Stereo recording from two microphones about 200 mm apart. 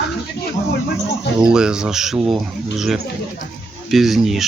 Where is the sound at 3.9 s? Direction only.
Centre (ahead or behind).